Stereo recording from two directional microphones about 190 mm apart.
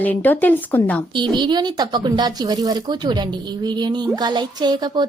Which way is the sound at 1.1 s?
25° right (ahead or behind).